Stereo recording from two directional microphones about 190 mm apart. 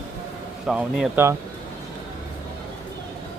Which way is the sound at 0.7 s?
Centre (ahead or behind).